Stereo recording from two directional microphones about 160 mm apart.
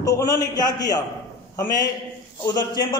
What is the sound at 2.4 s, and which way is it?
Speech, 25° left (ahead or behind).